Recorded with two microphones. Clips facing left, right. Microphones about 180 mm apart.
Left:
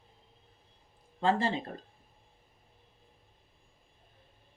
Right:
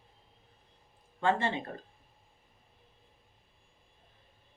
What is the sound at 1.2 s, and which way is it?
Speech, 35° left (ahead or behind).